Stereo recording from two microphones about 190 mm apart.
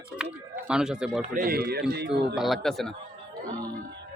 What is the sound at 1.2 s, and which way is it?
Speech, 45° right (ahead or behind).